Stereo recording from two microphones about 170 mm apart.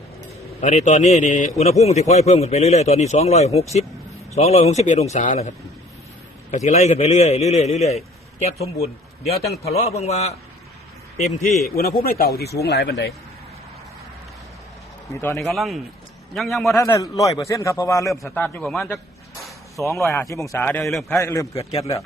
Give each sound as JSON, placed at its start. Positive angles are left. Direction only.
{"t": 0.6, "sound": "a man's voice", "side_deg": 40}
{"t": 11.7, "sound": "speech", "side_deg": 60}
{"t": 15.5, "sound": "a man's voice", "side_deg": 0}
{"t": 16.7, "sound": "a man's voice", "side_deg": 20}
{"t": 18.1, "sound": "a man's voice", "side_deg": 5}
{"t": 19.8, "sound": "a man's voice", "side_deg": 15}
{"t": 21.2, "sound": "a man's voice", "side_deg": 20}
{"t": 21.5, "sound": "a man's voice", "side_deg": 35}